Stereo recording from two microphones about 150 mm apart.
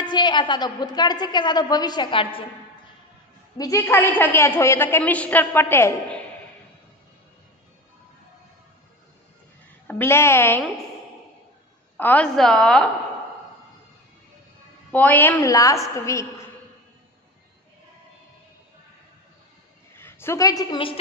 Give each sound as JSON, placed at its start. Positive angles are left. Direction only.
{"t": 0.0, "sound": "a woman's voice", "side_deg": 30}
{"t": 3.5, "sound": "a woman's voice", "side_deg": 20}
{"t": 9.8, "sound": "a woman's voice", "side_deg": 15}
{"t": 12.0, "sound": "a woman's voice", "side_deg": 10}
{"t": 14.9, "sound": "a woman's voice", "side_deg": 10}
{"t": 20.0, "sound": "a woman's voice", "side_deg": 15}